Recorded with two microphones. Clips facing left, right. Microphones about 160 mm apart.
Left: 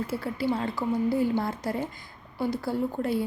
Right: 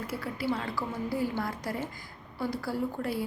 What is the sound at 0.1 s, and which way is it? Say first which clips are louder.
A woman's voice: left 1 dB; 25° left (ahead or behind).